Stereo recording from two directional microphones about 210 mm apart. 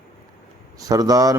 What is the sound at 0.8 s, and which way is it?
Speech, 15° right (ahead or behind).